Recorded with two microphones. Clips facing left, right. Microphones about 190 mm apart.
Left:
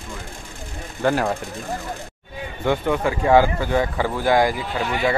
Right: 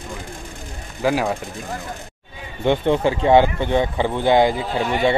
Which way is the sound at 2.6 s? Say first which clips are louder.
Right 3 dB; 25° right (ahead or behind).